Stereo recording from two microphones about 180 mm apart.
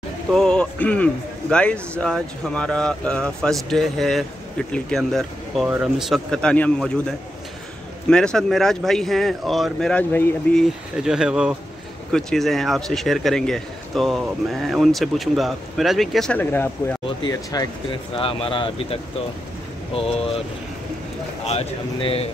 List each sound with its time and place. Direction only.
0.3 s a man's voice: 5° left (ahead or behind); by 20.2 s 30° left (ahead or behind)
21.5 s speech: 35° left (ahead or behind)